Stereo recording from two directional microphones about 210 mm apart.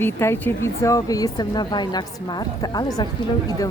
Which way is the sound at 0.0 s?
10° left (ahead or behind).